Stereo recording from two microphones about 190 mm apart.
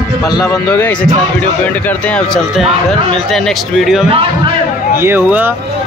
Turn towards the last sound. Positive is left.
turn(degrees=-10)  # may be behind; listen again after turning